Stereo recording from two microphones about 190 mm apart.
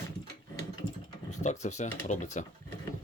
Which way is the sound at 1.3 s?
40° left (ahead or behind).